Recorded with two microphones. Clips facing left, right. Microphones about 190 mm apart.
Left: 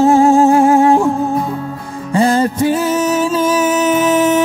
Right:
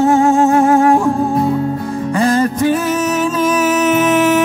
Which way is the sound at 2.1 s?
30° left (ahead or behind).